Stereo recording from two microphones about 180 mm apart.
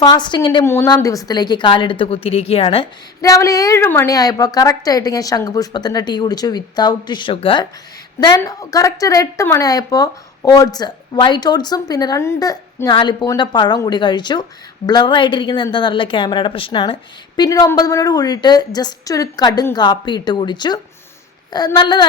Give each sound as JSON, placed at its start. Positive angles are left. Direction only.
{"t": 0.0, "sound": "speech", "side_deg": 25}
{"t": 0.6, "sound": "speech", "side_deg": 15}
{"t": 3.2, "sound": "speech", "side_deg": 20}